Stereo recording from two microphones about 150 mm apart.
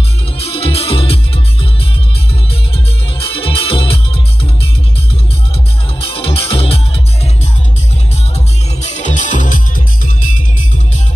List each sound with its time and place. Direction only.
0.4 s music: 40° left (ahead or behind)
3.2 s music: 35° left (ahead or behind)
5.9 s music: 40° left (ahead or behind)
8.8 s music: 50° left (ahead or behind)